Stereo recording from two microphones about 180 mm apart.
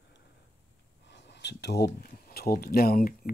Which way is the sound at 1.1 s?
70° left (ahead or behind).